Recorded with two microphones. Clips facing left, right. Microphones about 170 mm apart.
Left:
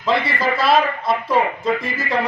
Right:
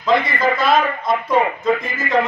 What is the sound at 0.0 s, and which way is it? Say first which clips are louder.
A man's voice: right 3 dB; 30° left (ahead or behind).